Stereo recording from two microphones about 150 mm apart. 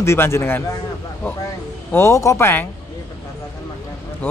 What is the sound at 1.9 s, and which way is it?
Speech, 20° left (ahead or behind).